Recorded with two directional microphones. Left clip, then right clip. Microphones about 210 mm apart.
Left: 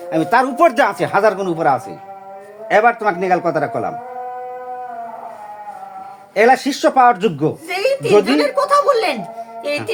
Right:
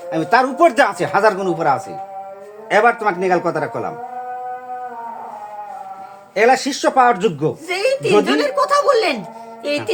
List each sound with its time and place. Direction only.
0.1 s speech: 30° left (ahead or behind)
6.3 s speech: 30° left (ahead or behind)
7.7 s a sound: 10° right (ahead or behind)
8.2 s speech: 10° right (ahead or behind)